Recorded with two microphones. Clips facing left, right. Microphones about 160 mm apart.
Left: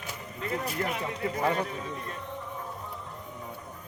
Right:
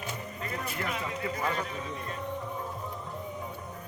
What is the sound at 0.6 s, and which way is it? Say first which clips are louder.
A man's voice: left 3 dB; 40° left (ahead or behind).